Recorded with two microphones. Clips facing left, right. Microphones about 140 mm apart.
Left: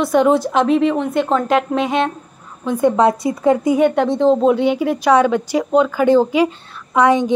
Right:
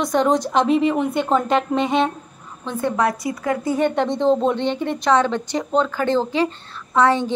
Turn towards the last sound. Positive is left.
turn(degrees=10)  # may be behind; listen again after turning